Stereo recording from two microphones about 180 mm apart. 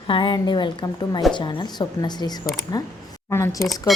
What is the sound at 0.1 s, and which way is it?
A woman's voice, 25° left (ahead or behind).